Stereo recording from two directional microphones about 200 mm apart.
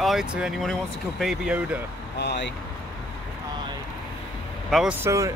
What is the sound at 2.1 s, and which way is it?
Speech, 55° left (ahead or behind).